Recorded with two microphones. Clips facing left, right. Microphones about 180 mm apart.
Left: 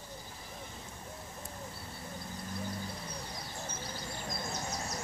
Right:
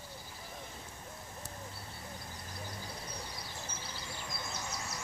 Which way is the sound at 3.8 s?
45° left (ahead or behind).